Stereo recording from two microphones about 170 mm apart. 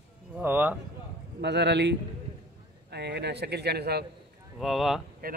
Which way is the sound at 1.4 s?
90° right.